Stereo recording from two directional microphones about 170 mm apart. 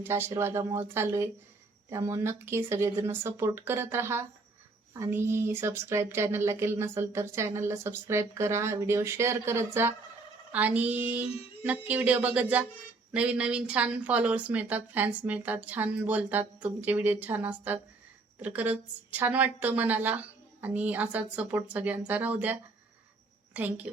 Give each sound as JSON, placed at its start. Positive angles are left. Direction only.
{"t": 0.0, "sound": "speech", "side_deg": -15}
{"t": 23.6, "sound": "speech", "side_deg": -10}